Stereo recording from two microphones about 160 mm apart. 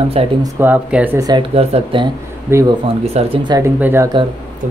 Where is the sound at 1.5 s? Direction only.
40° right (ahead or behind).